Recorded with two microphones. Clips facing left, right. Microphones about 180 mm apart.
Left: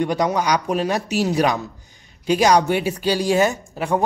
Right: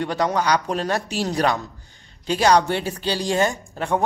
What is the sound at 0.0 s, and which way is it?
Speech, 10° left (ahead or behind).